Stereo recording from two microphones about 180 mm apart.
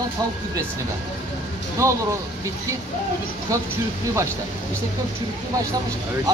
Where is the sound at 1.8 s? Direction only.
15° right (ahead or behind).